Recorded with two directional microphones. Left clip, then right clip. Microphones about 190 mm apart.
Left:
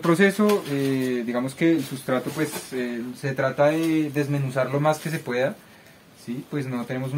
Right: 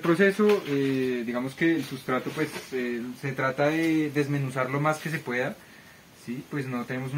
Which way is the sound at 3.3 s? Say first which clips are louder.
Left 4 dB; 15° left (ahead or behind).